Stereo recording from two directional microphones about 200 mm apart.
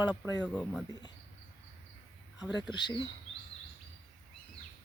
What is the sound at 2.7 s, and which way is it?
Speech, 20° left (ahead or behind).